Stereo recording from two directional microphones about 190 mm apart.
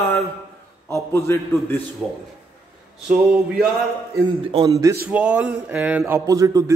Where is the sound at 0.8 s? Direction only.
15° left (ahead or behind).